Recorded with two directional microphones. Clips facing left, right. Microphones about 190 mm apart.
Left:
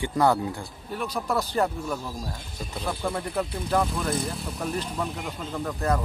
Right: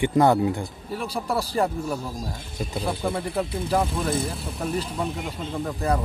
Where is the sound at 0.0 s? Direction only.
20° right (ahead or behind).